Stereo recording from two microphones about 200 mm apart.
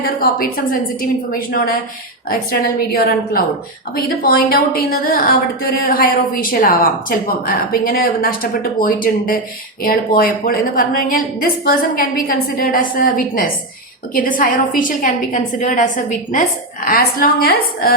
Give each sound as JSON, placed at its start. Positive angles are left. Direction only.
{"t": 0.2, "sound": "a woman's voice", "side_deg": 45}